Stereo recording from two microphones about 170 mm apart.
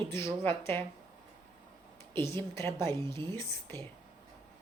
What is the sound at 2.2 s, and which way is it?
Speech, 15° left (ahead or behind).